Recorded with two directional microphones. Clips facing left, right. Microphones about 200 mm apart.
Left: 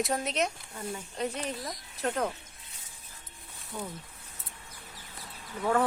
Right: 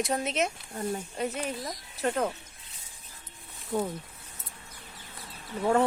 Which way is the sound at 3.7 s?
50° right (ahead or behind).